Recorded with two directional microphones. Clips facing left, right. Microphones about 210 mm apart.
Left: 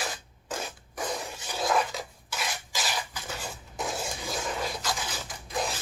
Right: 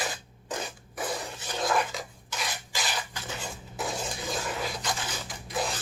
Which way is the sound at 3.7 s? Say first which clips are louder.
Even; centre (ahead or behind).